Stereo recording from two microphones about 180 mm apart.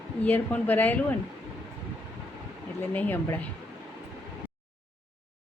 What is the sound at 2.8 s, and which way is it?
Speech, 10° left (ahead or behind).